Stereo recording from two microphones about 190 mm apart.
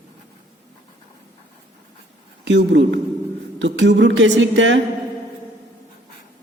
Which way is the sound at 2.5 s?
70° right (ahead or behind).